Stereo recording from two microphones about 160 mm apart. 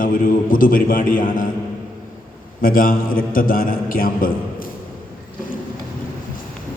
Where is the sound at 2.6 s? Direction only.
60° left (ahead or behind).